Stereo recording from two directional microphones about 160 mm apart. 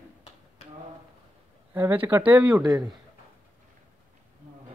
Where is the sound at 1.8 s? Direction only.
10° right (ahead or behind).